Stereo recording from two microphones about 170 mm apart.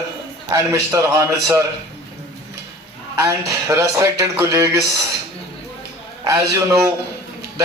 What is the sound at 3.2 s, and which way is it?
Speech, 20° right (ahead or behind).